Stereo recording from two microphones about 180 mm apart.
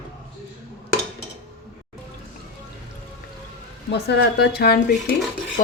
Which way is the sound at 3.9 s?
70° left (ahead or behind).